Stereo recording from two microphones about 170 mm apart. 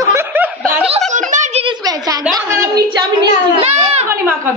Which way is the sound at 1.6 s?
20° right (ahead or behind).